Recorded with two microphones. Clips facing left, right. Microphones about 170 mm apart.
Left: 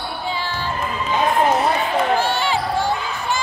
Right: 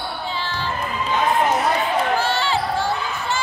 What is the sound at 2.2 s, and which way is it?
Basketball bounce, 15° left (ahead or behind).